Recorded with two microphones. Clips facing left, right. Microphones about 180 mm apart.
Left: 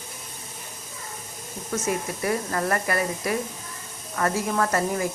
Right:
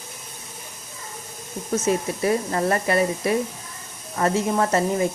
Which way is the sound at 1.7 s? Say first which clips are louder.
Right 5 dB; 25° right (ahead or behind).